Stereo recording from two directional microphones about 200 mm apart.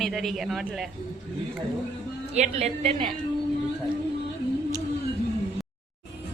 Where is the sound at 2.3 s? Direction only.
35° right (ahead or behind).